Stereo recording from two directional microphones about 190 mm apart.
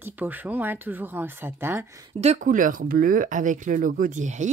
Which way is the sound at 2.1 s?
40° right (ahead or behind).